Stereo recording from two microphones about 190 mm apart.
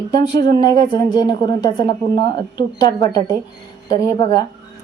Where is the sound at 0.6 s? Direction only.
20° left (ahead or behind).